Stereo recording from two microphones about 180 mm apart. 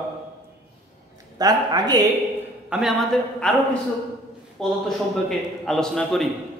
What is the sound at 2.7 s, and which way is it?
Speech, centre (ahead or behind).